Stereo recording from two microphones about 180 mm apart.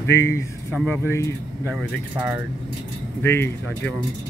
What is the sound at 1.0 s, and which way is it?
Speech, 15° left (ahead or behind).